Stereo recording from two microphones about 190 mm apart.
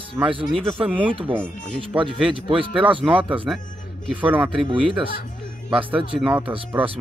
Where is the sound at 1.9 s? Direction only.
10° right (ahead or behind).